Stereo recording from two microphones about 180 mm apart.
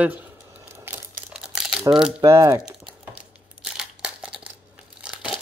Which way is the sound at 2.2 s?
15° right (ahead or behind).